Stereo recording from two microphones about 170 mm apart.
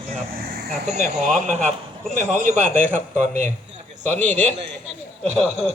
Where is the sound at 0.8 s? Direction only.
45° right (ahead or behind).